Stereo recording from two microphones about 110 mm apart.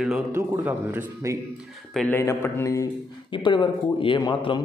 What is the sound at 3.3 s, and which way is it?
Speech, 45° left (ahead or behind).